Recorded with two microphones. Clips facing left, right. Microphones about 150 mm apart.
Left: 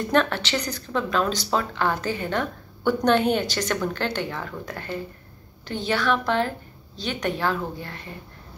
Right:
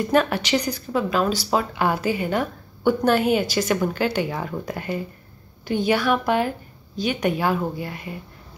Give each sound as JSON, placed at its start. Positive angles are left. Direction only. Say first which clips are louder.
{"t": 0.1, "sound": "speech", "louder": "right 2 dB", "side_deg": -10}